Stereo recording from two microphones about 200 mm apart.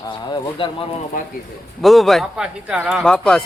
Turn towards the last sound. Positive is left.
turn(degrees=5)  # may be behind; listen again after turning